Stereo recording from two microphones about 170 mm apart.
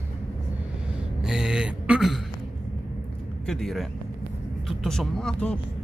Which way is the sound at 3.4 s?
Centre (ahead or behind).